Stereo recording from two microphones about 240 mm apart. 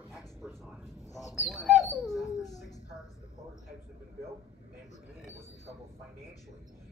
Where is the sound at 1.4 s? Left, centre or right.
Centre.